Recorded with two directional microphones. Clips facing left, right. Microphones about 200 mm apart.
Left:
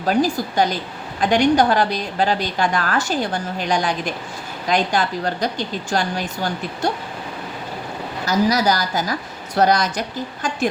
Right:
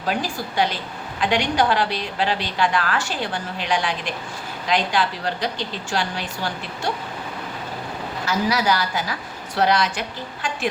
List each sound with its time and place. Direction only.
0.1 s a woman's voice: 45° left (ahead or behind)
8.2 s a woman's voice: 40° left (ahead or behind)